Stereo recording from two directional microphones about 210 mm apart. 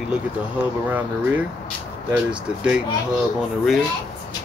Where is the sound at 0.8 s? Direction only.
10° right (ahead or behind).